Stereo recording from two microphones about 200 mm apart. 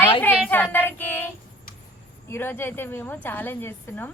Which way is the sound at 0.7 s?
10° left (ahead or behind).